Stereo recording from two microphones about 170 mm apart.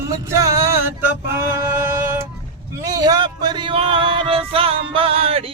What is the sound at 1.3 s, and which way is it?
Singing, 15° right (ahead or behind).